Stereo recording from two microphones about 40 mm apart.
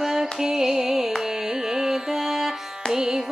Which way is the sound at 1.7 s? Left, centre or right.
Centre.